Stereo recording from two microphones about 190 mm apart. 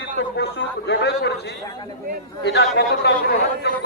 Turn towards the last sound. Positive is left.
turn(degrees=60)  # may be behind; listen again after turning